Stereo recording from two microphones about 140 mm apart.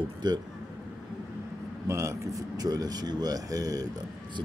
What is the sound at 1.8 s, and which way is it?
Speech, 20° right (ahead or behind).